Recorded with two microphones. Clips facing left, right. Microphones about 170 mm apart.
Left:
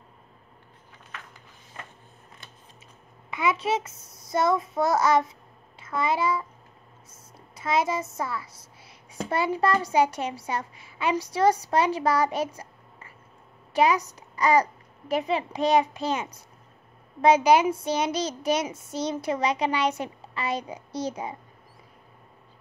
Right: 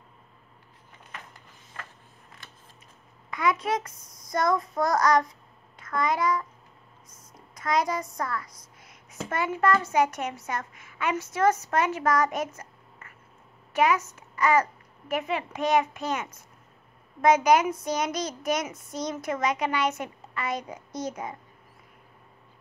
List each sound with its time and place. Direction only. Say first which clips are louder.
3.3 s a child's voice: left 1 dB; 25° left (ahead or behind)
4.8 s a woman's voice: left 3 dB; 5° left (ahead or behind)
5.9 s a child's voice: even; 30° left (ahead or behind)
7.3 s a sound: left 1 dB; 25° left (ahead or behind)
8.0 s a woman's voice: left 1 dB; 5° left (ahead or behind)
8.8 s a sound: left 3 dB; 35° left (ahead or behind)
9.9 s a child's voice: left 2 dB; 30° left (ahead or behind)
13.7 s a child's voice: left 2 dB; 35° left (ahead or behind)